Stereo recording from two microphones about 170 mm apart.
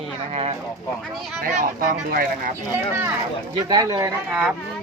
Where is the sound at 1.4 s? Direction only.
50° right (ahead or behind).